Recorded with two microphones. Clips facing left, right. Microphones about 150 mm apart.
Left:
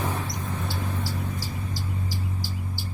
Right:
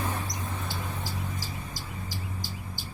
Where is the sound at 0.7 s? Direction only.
15° right (ahead or behind).